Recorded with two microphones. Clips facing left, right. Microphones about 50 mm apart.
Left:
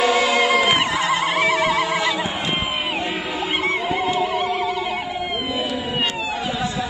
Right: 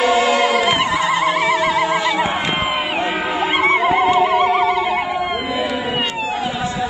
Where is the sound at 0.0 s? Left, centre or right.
Right.